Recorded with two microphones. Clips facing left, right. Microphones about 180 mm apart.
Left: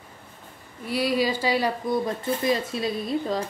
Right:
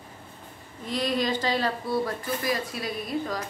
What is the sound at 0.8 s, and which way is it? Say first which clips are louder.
Speech: left 3 dB; 10° left (ahead or behind).